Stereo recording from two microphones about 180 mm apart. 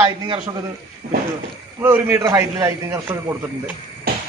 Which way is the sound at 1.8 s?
15° right (ahead or behind).